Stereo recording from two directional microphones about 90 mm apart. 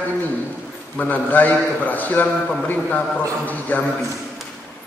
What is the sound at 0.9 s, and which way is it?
A man's voice, 20° left (ahead or behind).